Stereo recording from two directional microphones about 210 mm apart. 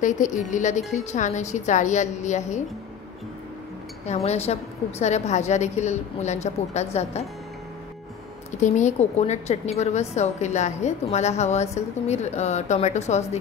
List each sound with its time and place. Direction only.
0.0 s a woman's voice: 35° left (ahead or behind)
4.0 s a woman's voice: 30° left (ahead or behind)
8.5 s a woman's voice: 35° left (ahead or behind)